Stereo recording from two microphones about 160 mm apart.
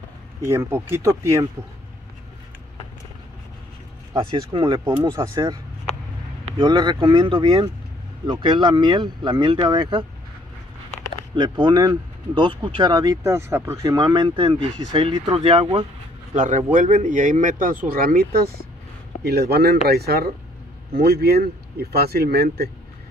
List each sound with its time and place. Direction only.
0.5 s speech: 15° right (ahead or behind)
4.2 s speech: 30° right (ahead or behind)
4.8 s speech: 20° right (ahead or behind)
6.4 s speech: 30° right (ahead or behind)
11.3 s speech: 30° right (ahead or behind)
16.3 s a man's voice: 50° right (ahead or behind); by 22.7 s 80° right